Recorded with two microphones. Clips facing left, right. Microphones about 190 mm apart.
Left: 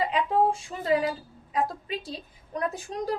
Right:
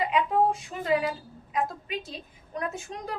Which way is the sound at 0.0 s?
30° left (ahead or behind).